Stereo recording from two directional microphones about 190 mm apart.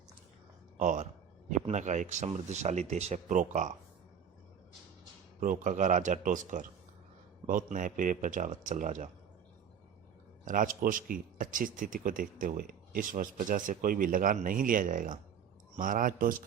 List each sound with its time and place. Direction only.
0.8 s speech: 40° right (ahead or behind)
5.4 s speech: 40° right (ahead or behind)
10.4 s speech: 45° right (ahead or behind)